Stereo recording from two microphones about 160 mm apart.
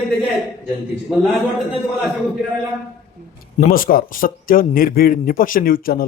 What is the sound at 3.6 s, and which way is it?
A man's voice, 65° left (ahead or behind).